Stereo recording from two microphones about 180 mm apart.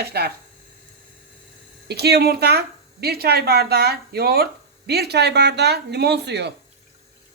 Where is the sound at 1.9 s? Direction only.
65° right (ahead or behind).